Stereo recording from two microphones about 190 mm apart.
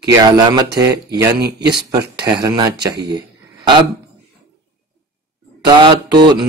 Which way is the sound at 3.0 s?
60° right (ahead or behind).